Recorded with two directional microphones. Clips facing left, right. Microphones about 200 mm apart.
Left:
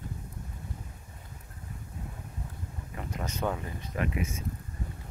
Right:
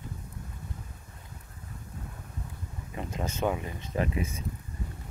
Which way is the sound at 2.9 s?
25° right (ahead or behind).